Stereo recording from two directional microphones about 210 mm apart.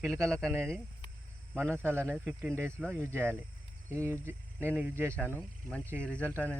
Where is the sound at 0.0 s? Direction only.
15° right (ahead or behind).